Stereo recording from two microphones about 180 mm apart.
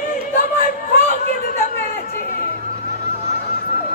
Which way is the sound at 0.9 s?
50° left (ahead or behind).